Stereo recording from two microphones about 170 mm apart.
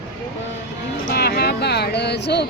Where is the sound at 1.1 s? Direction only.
65° left (ahead or behind).